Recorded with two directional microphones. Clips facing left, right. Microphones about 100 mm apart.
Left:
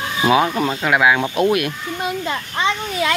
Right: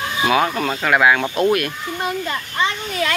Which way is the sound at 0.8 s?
10° left (ahead or behind).